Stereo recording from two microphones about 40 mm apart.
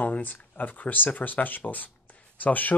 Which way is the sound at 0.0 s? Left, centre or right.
Left.